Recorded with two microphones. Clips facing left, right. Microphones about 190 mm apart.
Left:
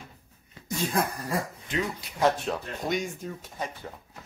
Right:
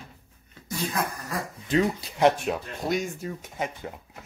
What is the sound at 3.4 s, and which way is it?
Speech, 15° right (ahead or behind).